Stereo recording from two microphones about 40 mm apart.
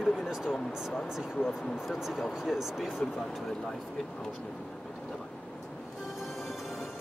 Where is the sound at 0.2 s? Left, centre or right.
Centre.